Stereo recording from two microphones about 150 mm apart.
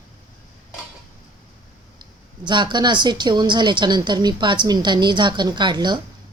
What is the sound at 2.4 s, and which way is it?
Speech, 30° right (ahead or behind).